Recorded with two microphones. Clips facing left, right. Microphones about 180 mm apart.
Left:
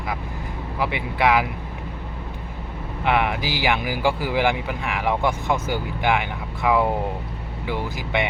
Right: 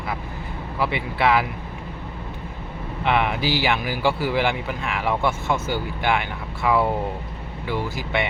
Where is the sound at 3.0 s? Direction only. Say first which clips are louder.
Even; 10° left (ahead or behind).